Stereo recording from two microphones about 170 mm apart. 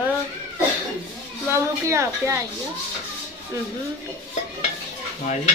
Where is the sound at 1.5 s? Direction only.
15° right (ahead or behind).